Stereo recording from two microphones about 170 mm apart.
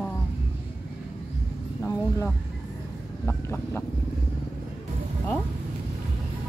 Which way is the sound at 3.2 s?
10° left (ahead or behind).